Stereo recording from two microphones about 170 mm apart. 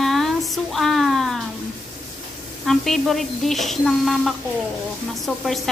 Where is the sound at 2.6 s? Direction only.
Centre (ahead or behind).